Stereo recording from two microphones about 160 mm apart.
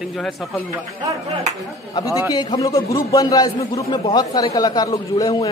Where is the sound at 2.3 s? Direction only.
30° left (ahead or behind).